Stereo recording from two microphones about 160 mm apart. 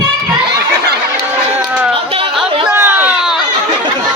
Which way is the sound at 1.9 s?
35° right (ahead or behind).